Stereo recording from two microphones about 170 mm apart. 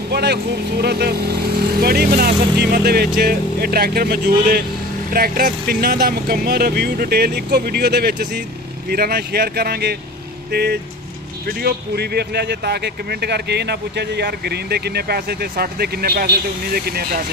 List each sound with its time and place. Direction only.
0.1 s speech: 75° right (ahead or behind)